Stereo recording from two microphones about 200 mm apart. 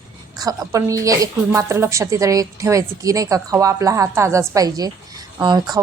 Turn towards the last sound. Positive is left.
turn(degrees=-20)  # may be behind; listen again after turning